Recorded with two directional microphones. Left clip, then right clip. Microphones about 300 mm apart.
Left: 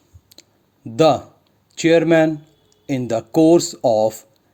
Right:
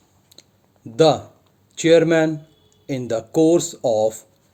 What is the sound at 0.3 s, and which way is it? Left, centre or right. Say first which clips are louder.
Clicking: left 2 dB; centre.